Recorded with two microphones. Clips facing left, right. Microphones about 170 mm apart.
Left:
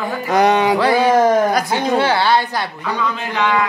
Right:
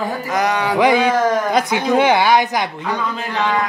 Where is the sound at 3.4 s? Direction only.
35° right (ahead or behind).